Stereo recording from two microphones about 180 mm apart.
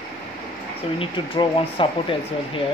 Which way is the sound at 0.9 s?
30° left (ahead or behind).